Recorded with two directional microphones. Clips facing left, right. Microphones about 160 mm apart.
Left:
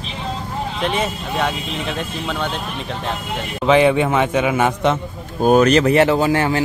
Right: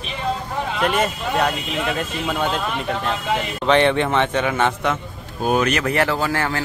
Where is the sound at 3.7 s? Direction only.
5° left (ahead or behind).